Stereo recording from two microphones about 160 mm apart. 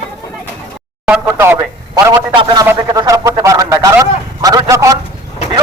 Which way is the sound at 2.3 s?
25° right (ahead or behind).